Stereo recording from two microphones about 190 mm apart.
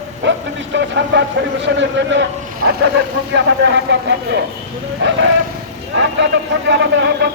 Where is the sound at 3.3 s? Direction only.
65° right (ahead or behind).